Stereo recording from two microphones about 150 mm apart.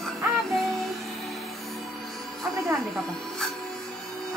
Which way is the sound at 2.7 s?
Centre (ahead or behind).